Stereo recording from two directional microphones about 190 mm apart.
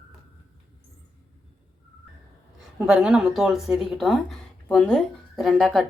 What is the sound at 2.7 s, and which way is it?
Speech, 5° right (ahead or behind).